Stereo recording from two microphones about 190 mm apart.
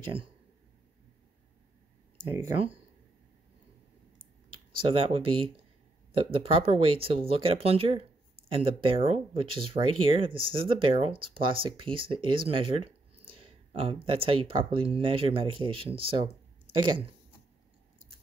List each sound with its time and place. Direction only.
2.5 s speech: 30° right (ahead or behind)
4.8 s speech: 30° right (ahead or behind)